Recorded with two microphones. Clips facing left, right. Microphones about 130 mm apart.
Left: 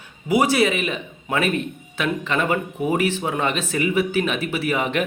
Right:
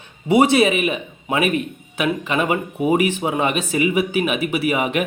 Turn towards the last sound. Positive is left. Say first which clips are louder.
# right 3 dB
turn(degrees=-15)  # may be behind; listen again after turning